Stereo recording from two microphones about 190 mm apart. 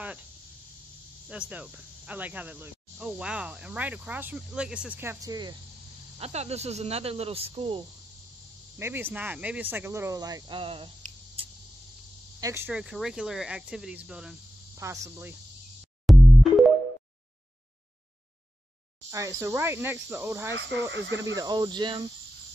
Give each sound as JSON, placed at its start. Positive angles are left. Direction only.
{"t": 1.5, "sound": "speech", "side_deg": -10}
{"t": 6.1, "sound": "speech", "side_deg": -35}
{"t": 8.7, "sound": "speech", "side_deg": -10}
{"t": 12.4, "sound": "speech", "side_deg": -15}
{"t": 14.8, "sound": "speech", "side_deg": -15}
{"t": 16.1, "sound": "music", "side_deg": 0}
{"t": 19.0, "sound": "speech", "side_deg": -15}
{"t": 20.9, "sound": "speech", "side_deg": -70}
{"t": 21.4, "sound": "speech", "side_deg": -20}